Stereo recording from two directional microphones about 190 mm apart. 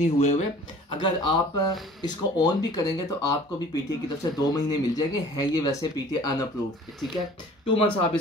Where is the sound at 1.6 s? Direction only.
20° left (ahead or behind).